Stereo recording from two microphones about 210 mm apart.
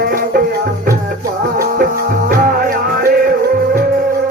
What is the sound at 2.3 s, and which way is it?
Music, 40° right (ahead or behind).